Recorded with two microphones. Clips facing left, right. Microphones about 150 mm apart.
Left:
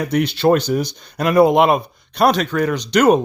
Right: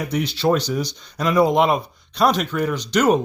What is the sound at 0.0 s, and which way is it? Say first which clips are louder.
Speech: left 5 dB; 60° left (ahead or behind).